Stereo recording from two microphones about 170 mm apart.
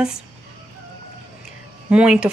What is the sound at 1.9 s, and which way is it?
Speech, 5° right (ahead or behind).